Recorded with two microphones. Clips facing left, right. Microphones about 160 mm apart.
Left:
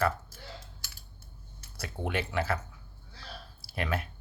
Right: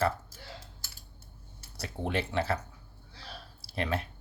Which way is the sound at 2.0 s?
30° right (ahead or behind).